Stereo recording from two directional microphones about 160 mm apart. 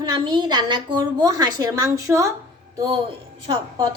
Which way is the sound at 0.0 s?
25° right (ahead or behind).